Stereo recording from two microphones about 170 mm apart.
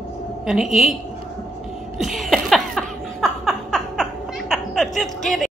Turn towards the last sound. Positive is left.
turn(degrees=0)  # may be behind; listen again after turning